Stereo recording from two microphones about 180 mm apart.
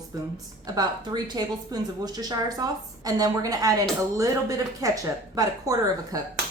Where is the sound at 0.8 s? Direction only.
20° right (ahead or behind).